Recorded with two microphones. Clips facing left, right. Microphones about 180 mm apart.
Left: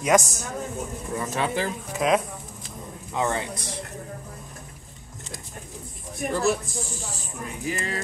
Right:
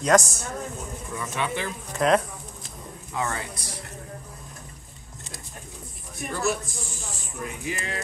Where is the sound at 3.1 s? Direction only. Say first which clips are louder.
Left 4 dB; 20° left (ahead or behind).